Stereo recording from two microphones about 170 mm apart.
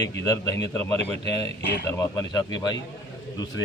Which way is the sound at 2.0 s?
20° left (ahead or behind).